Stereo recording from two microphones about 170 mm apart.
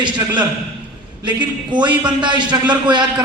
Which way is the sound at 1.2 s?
25° right (ahead or behind).